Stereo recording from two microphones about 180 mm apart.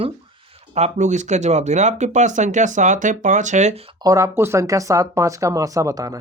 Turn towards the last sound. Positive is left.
turn(degrees=-20)  # may be behind; listen again after turning